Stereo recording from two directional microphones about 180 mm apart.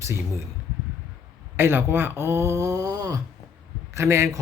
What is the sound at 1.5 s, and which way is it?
Speech, 10° right (ahead or behind).